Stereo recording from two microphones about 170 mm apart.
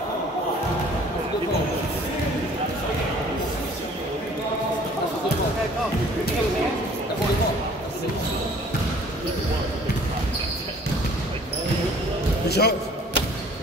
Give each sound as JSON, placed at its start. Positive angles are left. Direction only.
{"t": 12.4, "sound": "music", "side_deg": 75}